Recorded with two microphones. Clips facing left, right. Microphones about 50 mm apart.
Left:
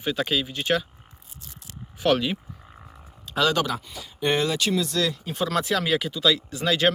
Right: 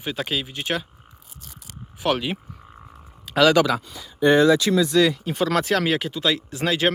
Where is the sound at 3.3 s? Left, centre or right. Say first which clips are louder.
Right 6 dB; right.